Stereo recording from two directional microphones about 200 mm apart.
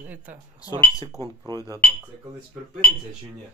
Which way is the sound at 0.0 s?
10° right (ahead or behind).